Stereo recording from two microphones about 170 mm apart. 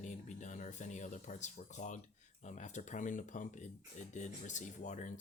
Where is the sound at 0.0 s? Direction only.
45° left (ahead or behind).